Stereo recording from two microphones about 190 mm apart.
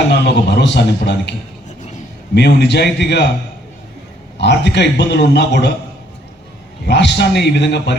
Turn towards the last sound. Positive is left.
turn(degrees=65)  # may be behind; listen again after turning